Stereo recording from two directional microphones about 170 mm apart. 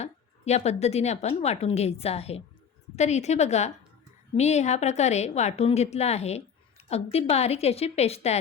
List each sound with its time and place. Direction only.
0.0 s a woman's voice: 40° left (ahead or behind)